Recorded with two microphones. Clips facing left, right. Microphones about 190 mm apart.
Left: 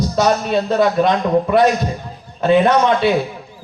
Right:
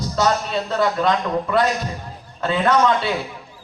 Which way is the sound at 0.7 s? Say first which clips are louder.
Left 4 dB; 15° left (ahead or behind).